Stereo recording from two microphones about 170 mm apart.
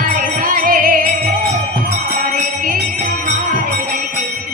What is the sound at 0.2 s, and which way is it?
Music, 55° right (ahead or behind).